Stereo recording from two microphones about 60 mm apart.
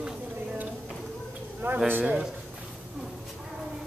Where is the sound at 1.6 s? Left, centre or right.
Right.